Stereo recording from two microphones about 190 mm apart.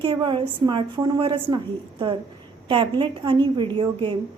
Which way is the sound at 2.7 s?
25° right (ahead or behind).